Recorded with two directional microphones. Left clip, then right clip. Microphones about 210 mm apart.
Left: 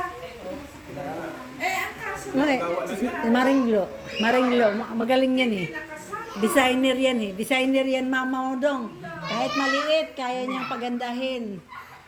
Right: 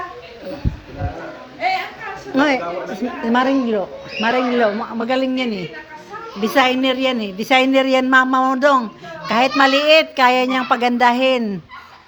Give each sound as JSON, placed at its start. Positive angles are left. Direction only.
{"t": 2.3, "sound": "a man's voice", "side_deg": -20}